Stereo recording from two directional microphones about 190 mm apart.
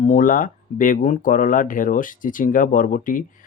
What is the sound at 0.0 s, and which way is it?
Speech, 45° left (ahead or behind).